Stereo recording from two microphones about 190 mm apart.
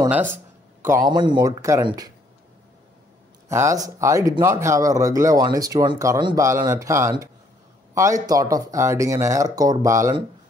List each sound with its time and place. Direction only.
0.1 s speech: 10° right (ahead or behind)
3.4 s speech: 15° right (ahead or behind)